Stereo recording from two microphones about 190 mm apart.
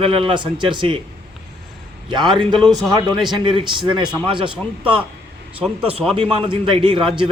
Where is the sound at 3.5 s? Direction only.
30° right (ahead or behind).